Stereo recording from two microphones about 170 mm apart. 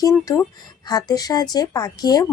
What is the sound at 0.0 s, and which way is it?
A woman's voice, 20° left (ahead or behind).